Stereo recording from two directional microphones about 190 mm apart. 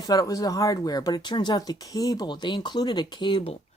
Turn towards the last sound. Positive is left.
turn(degrees=25)  # may be behind; listen again after turning